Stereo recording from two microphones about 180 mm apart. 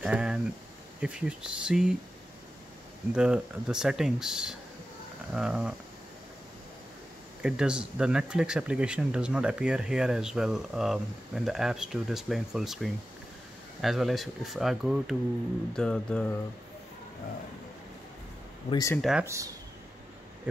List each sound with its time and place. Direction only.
0.0 s speech: 5° right (ahead or behind)
3.2 s speech: 5° right (ahead or behind)
7.4 s speech: 5° right (ahead or behind)
18.7 s speech: 20° left (ahead or behind)
18.9 s speech: centre (ahead or behind)
19.2 s speech: 15° right (ahead or behind)